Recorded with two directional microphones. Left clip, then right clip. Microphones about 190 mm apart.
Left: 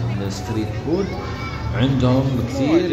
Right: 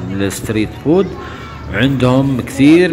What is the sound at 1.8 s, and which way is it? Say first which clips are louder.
Speech: right 7 dB; 25° right (ahead or behind).